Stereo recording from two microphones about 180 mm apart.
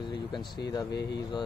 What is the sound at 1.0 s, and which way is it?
Speech, 65° left (ahead or behind).